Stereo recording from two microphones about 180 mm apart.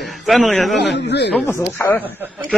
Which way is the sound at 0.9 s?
75° left (ahead or behind).